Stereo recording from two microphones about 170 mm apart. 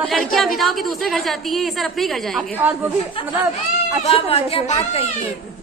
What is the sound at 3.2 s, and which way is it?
Speech, 30° left (ahead or behind).